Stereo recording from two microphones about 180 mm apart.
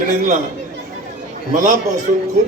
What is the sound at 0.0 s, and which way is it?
Speech, 45° right (ahead or behind).